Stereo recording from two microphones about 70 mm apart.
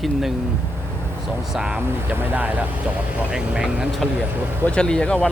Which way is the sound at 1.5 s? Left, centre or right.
Centre.